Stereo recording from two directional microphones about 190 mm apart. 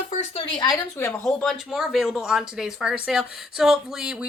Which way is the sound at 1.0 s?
15° left (ahead or behind).